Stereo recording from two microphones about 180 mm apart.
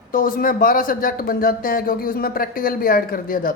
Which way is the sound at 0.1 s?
50° left (ahead or behind).